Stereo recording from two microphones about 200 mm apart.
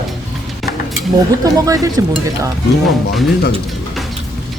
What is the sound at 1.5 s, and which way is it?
Speech, 15° right (ahead or behind).